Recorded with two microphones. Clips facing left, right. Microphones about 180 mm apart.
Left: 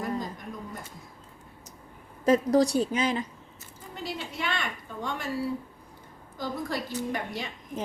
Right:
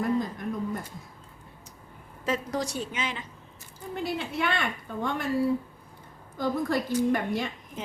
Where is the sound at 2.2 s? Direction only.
35° left (ahead or behind).